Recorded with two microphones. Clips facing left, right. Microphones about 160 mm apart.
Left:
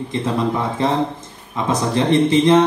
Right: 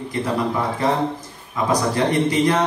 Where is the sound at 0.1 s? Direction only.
25° left (ahead or behind).